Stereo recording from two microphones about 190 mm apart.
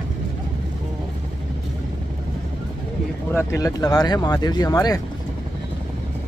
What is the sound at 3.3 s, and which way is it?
Speech, 15° left (ahead or behind).